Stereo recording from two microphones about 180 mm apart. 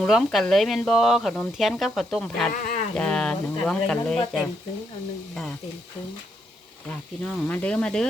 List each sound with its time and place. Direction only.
0.0 s speech: centre (ahead or behind)
2.5 s speech: 50° left (ahead or behind)
2.9 s speech: 5° left (ahead or behind)
7.3 s speech: 10° left (ahead or behind)